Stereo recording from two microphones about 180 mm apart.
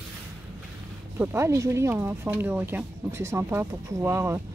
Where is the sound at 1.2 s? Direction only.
15° right (ahead or behind).